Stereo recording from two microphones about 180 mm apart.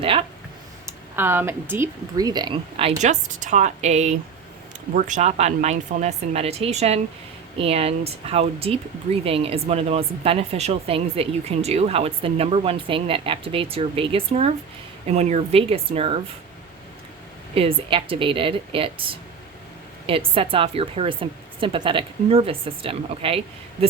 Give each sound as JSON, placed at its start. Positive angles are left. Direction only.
{"t": 0.0, "sound": "a sound", "side_deg": -30}
{"t": 0.9, "sound": "speech", "side_deg": -10}
{"t": 3.0, "sound": "speech", "side_deg": -40}
{"t": 17.5, "sound": "speech", "side_deg": -30}
{"t": 20.1, "sound": "speech", "side_deg": -30}